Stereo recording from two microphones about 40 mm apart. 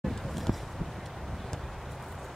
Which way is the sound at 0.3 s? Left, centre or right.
Centre.